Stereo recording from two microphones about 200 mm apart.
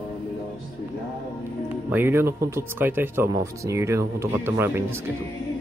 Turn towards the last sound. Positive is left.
turn(degrees=-10)  # may be behind; listen again after turning